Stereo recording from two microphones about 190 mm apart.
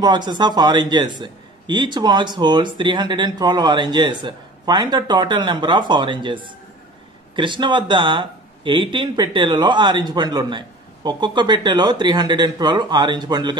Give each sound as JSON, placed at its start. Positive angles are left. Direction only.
{"t": 0.0, "sound": "a man's voice", "side_deg": -25}